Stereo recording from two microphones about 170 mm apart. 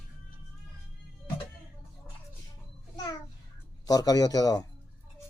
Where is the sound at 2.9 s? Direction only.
25° left (ahead or behind).